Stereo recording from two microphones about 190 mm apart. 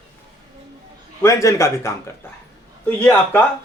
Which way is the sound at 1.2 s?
15° left (ahead or behind).